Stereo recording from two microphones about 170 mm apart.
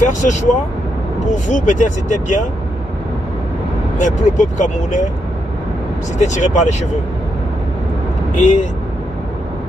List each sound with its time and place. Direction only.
0.0 s speech: 45° left (ahead or behind)
4.0 s speech: 45° left (ahead or behind)
6.1 s speech: 45° left (ahead or behind)
8.4 s speech: 45° left (ahead or behind)